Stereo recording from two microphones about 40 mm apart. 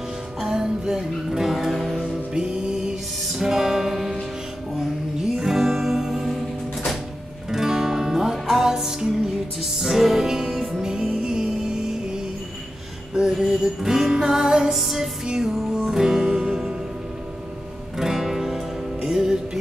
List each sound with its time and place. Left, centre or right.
0.5 s music: centre
2.3 s music: centre
5.4 s music: centre
7.5 s music: centre
14.8 s music: centre
15.2 s music: centre
17.9 s music: centre